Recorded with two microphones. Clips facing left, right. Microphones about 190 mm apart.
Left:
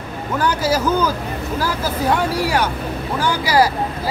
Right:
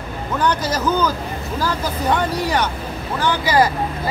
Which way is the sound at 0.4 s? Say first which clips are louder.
Left 2 dB; 5° left (ahead or behind).